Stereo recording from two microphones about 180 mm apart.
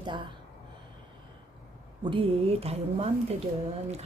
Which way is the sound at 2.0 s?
30° right (ahead or behind).